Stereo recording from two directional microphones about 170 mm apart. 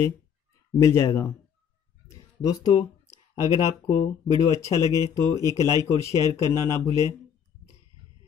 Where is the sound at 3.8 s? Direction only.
15° left (ahead or behind).